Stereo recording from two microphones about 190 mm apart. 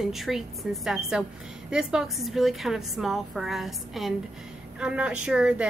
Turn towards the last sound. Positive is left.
turn(degrees=-5)  # may be behind; listen again after turning